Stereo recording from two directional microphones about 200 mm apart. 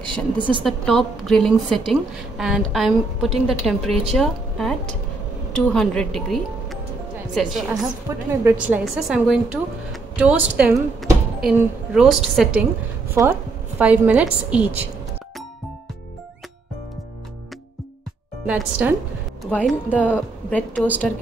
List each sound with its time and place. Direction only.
0.0 s a woman's voice: 25° right (ahead or behind)
0.7 s a woman's voice: centre (ahead or behind)
7.8 s a woman's voice: 10° right (ahead or behind)
18.5 s a woman's voice: 5° right (ahead or behind)